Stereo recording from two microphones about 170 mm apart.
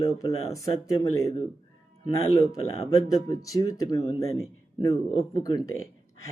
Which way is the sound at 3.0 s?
20° left (ahead or behind).